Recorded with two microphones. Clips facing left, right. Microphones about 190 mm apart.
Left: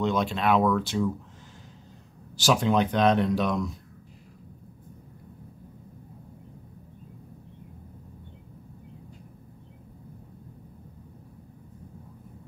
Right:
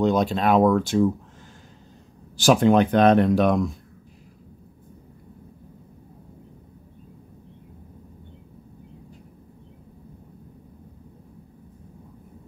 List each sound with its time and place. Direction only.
0.0 s speech: 40° right (ahead or behind)
2.3 s speech: 50° right (ahead or behind)